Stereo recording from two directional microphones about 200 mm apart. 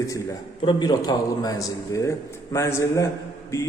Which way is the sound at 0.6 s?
20° left (ahead or behind).